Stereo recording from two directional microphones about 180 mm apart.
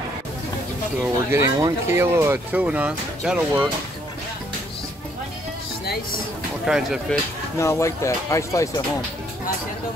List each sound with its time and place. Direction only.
1.3 s speech: 15° right (ahead or behind)
6.6 s speech: 5° right (ahead or behind)
7.5 s speech: 15° left (ahead or behind)